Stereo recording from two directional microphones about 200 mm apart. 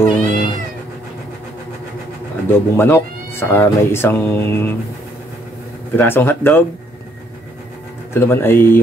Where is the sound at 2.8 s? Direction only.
10° left (ahead or behind).